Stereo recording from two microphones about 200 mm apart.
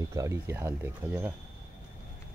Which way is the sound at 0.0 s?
15° right (ahead or behind).